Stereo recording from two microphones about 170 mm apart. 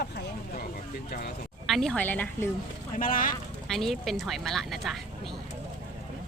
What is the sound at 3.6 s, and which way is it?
Speech, centre (ahead or behind).